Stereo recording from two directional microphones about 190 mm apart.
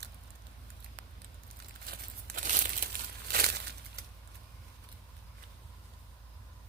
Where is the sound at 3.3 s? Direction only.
55° right (ahead or behind).